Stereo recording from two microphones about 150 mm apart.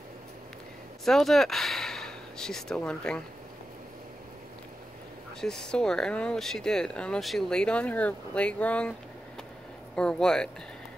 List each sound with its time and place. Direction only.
1.0 s speech: centre (ahead or behind)
5.4 s speech: 5° left (ahead or behind)
9.9 s speech: 5° left (ahead or behind)